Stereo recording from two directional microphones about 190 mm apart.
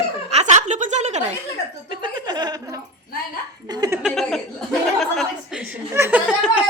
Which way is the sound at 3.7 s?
20° right (ahead or behind).